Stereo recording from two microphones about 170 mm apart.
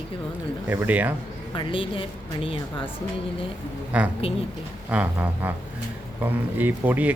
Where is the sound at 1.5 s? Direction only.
30° left (ahead or behind).